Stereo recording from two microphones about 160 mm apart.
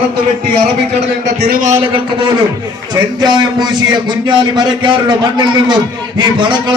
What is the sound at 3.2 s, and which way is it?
A man's voice, 25° right (ahead or behind).